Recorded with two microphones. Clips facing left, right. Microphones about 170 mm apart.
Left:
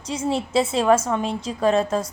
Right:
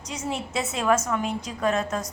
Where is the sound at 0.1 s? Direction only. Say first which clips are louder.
Left 7 dB; 30° left (ahead or behind).